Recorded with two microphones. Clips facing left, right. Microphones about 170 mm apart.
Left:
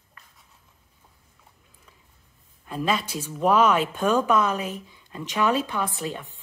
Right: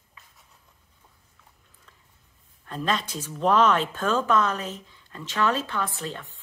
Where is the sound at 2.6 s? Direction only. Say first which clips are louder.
Left 2 dB; 10° left (ahead or behind).